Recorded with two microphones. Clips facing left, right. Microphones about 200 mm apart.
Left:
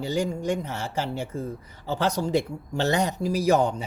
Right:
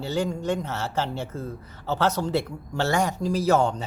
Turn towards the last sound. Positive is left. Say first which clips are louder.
# even
turn(degrees=15)  # may be behind; listen again after turning